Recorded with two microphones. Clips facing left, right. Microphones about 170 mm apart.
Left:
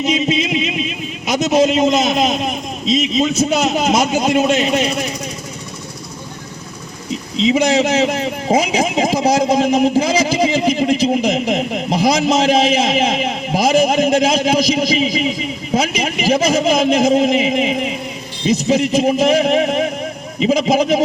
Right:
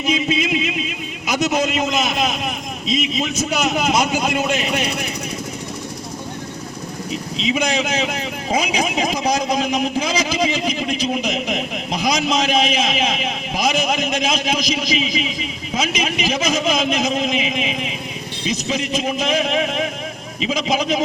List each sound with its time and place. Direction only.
0.0 s a sound: 20° left (ahead or behind)
1.4 s a man's voice: 25° left (ahead or behind)
7.5 s a man's voice: 30° left (ahead or behind)